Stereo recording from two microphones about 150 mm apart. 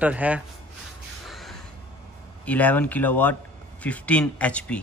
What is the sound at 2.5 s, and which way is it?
Speech, 10° left (ahead or behind).